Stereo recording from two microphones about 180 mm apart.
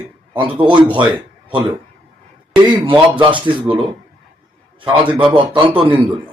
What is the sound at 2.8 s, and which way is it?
Speech, 25° right (ahead or behind).